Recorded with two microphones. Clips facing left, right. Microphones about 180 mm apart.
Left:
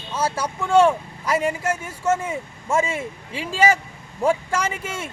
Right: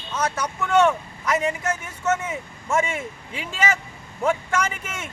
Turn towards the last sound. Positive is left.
turn(degrees=30)  # may be behind; listen again after turning